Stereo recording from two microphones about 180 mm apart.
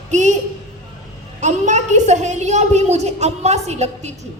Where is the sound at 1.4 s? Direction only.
40° right (ahead or behind).